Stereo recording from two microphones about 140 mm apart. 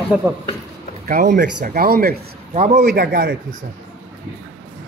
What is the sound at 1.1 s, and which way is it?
Speech, 75° right (ahead or behind).